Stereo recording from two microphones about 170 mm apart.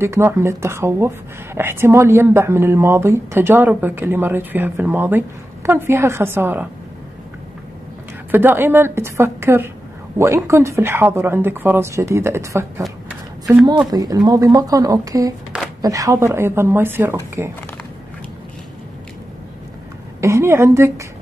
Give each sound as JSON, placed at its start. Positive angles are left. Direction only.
{"t": 0.0, "sound": "speech", "side_deg": -15}
{"t": 8.3, "sound": "speech", "side_deg": -10}
{"t": 13.8, "sound": "speech", "side_deg": -20}
{"t": 20.2, "sound": "a woman's voice", "side_deg": -15}